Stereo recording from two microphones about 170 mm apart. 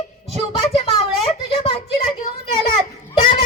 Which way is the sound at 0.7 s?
35° left (ahead or behind).